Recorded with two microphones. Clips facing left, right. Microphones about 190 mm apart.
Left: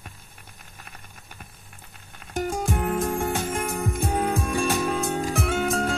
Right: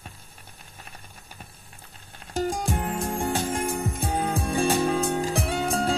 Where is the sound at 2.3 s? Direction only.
30° right (ahead or behind).